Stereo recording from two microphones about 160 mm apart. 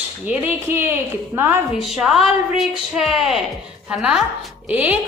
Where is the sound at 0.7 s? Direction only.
15° right (ahead or behind).